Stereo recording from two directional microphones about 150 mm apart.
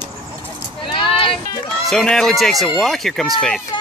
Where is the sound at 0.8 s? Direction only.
35° left (ahead or behind).